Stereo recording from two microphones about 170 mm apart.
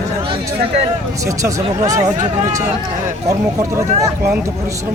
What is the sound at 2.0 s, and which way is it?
Speech, 45° right (ahead or behind).